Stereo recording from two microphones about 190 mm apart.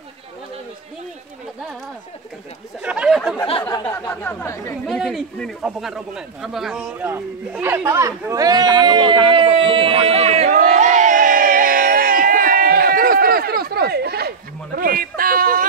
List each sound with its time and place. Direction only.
2.8 s chatter: 5° right (ahead or behind)
3.6 s chatter: 15° left (ahead or behind)
4.8 s speech: centre (ahead or behind); by 14.3 s 55° right (ahead or behind)
14.8 s a sound: 50° right (ahead or behind)